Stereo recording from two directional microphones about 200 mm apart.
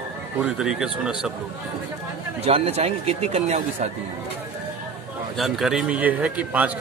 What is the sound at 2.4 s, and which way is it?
Speech, 30° right (ahead or behind).